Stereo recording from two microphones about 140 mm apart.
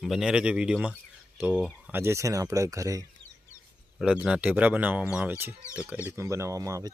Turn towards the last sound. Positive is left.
turn(degrees=-25)  # may be behind; listen again after turning